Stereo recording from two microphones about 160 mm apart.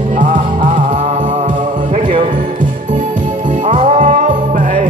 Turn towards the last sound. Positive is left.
turn(degrees=-50)  # may be behind; listen again after turning